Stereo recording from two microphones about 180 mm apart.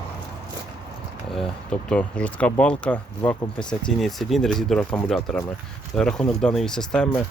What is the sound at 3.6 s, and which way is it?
Speech, 25° left (ahead or behind).